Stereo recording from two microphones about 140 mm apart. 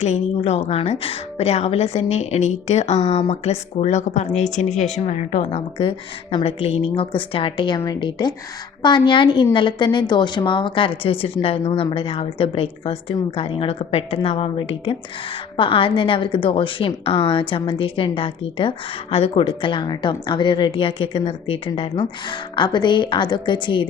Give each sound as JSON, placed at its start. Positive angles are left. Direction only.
{"t": 0.0, "sound": "a woman's voice", "side_deg": 50}
{"t": 5.7, "sound": "a woman's voice", "side_deg": 40}